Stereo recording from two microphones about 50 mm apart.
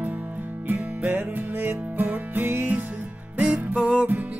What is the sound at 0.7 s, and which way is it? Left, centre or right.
Music, right.